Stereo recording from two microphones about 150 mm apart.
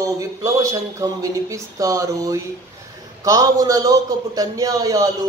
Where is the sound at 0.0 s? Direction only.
20° right (ahead or behind).